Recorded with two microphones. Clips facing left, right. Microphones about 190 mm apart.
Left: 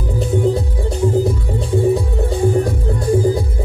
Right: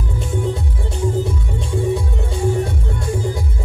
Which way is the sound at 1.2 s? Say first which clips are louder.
Left 5 dB; 35° left (ahead or behind).